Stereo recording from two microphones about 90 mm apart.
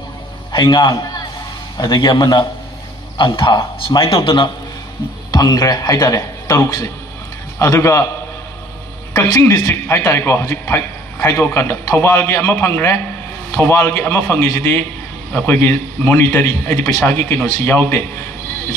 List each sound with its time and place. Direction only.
0.5 s a man's voice: 55° left (ahead or behind)
3.2 s speech: 65° left (ahead or behind)
5.3 s a man's voice: 45° left (ahead or behind)
9.1 s a man's voice: 30° left (ahead or behind)